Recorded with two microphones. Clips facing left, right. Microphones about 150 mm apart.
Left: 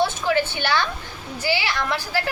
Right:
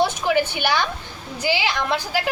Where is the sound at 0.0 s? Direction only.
15° right (ahead or behind).